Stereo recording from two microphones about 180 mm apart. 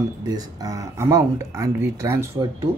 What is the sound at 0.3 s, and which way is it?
Speech, 20° right (ahead or behind).